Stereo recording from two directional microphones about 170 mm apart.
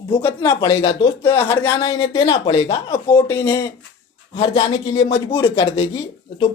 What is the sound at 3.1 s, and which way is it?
Speech, 15° left (ahead or behind).